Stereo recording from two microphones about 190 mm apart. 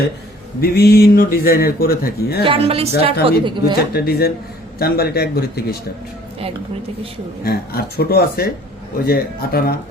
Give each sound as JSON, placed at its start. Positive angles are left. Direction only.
{"t": 0.6, "sound": "speech", "side_deg": 55}
{"t": 2.4, "sound": "speech", "side_deg": -30}
{"t": 3.9, "sound": "speech", "side_deg": 55}
{"t": 7.4, "sound": "speech", "side_deg": 55}